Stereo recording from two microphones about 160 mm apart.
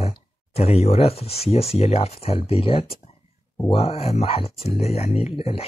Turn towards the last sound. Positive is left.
turn(degrees=40)  # may be behind; listen again after turning